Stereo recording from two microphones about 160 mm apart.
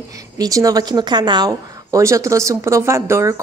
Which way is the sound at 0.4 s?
20° right (ahead or behind).